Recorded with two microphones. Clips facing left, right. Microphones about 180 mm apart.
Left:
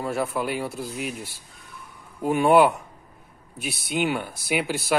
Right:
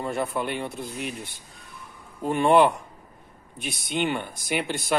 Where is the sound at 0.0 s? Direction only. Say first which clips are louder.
Left 1 dB; 5° left (ahead or behind).